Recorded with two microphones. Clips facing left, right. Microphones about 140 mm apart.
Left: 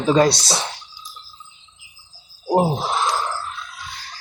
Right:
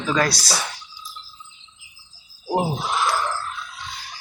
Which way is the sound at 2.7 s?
30° left (ahead or behind).